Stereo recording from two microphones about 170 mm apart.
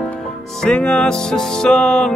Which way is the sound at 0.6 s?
5° left (ahead or behind).